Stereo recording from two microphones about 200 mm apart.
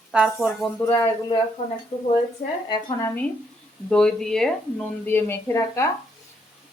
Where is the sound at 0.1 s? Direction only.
5° right (ahead or behind).